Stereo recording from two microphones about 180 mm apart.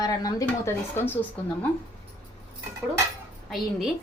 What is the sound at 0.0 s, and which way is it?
Speech, 20° left (ahead or behind).